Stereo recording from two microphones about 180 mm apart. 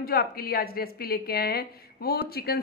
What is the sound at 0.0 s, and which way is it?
A woman's voice, 55° left (ahead or behind).